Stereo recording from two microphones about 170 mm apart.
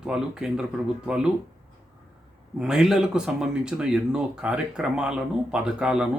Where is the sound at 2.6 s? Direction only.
5° right (ahead or behind).